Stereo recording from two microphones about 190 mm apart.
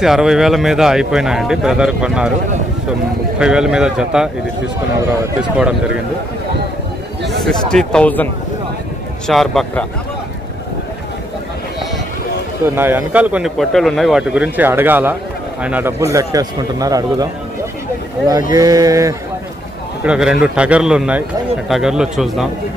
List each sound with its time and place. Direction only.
0.0 s speech: centre (ahead or behind)
3.3 s speech: 5° right (ahead or behind)
5.4 s speech: 5° right (ahead or behind)
7.2 s speech: 5° left (ahead or behind)
9.3 s speech: centre (ahead or behind)
12.6 s speech: 10° right (ahead or behind)
18.5 s speech: 20° right (ahead or behind)
20.0 s speech: 5° right (ahead or behind)